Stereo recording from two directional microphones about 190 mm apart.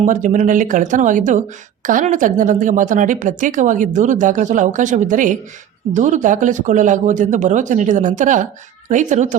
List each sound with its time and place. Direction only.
0.0 s speech: 40° right (ahead or behind)